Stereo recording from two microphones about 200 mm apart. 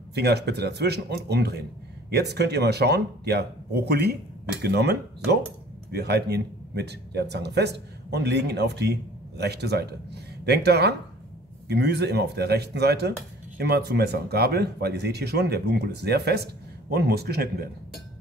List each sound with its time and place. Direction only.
0.1 s speech: 55° right (ahead or behind)